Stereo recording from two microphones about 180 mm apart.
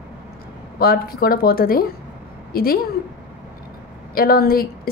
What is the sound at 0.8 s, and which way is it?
A woman's voice, 55° left (ahead or behind).